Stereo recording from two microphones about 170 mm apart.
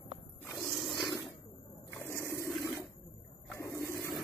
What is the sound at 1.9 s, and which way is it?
Water, 15° left (ahead or behind).